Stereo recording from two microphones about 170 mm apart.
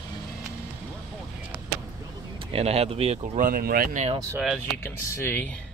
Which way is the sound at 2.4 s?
35° right (ahead or behind).